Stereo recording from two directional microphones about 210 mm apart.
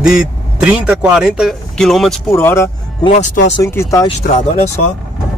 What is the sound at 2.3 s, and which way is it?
Speech, 10° left (ahead or behind).